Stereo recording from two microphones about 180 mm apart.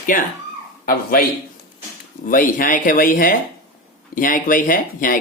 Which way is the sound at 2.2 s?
50° left (ahead or behind).